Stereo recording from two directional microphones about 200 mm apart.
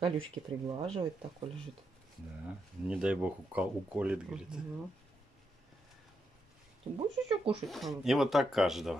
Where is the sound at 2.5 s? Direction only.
5° right (ahead or behind).